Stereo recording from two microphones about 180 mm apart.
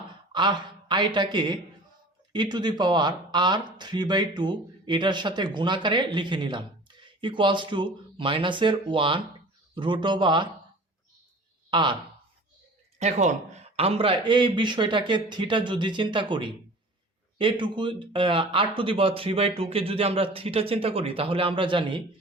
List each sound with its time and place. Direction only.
0.3 s speech: 25° right (ahead or behind)
11.7 s speech: 25° right (ahead or behind)
13.0 s speech: 40° right (ahead or behind)